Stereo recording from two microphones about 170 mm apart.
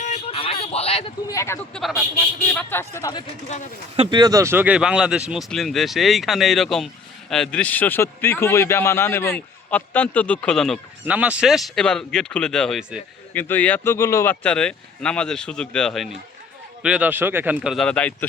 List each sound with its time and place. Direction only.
0.0 s a sound: 40° left (ahead or behind)
1.3 s a man's voice: 20° left (ahead or behind)
1.7 s a man's voice: centre (ahead or behind); by 3.2 s 20° left (ahead or behind)
3.9 s speech: 35° right (ahead or behind)
4.2 s speech: 20° right (ahead or behind); by 10.8 s 5° left (ahead or behind)
11.0 s a man's voice: 5° right (ahead or behind); by 14.3 s 15° left (ahead or behind)
14.4 s speech: 5° left (ahead or behind)
16.8 s speech: 5° right (ahead or behind)